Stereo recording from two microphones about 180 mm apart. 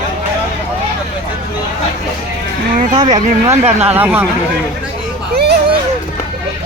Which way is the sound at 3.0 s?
45° right (ahead or behind).